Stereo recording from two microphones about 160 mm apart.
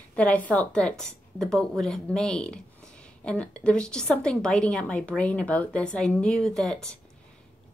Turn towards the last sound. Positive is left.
turn(degrees=5)  # may be behind; listen again after turning